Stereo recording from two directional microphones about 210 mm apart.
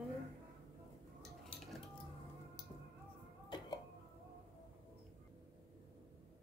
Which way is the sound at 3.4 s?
20° left (ahead or behind).